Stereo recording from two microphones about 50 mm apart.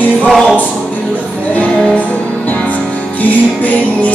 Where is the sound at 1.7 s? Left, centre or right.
Centre.